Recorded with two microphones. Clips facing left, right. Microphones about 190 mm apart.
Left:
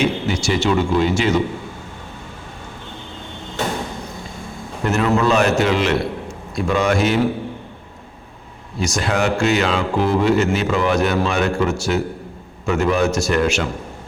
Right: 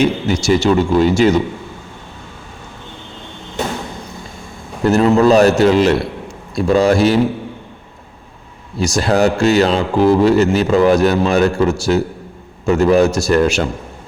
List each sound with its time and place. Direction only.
0.0 s speech: 40° right (ahead or behind)
4.8 s speech: 35° right (ahead or behind)
8.8 s speech: 35° right (ahead or behind)